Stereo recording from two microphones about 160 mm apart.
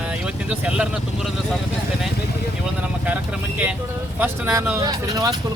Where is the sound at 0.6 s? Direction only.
5° right (ahead or behind).